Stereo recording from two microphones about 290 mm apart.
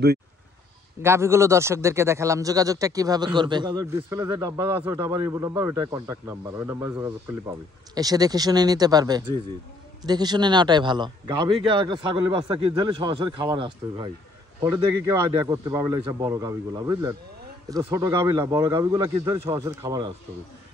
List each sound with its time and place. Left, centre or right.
1.0 s speech: centre
15.4 s speech: centre